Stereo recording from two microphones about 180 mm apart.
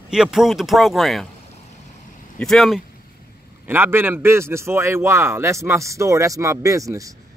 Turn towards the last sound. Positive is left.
turn(degrees=-20)  # may be behind; listen again after turning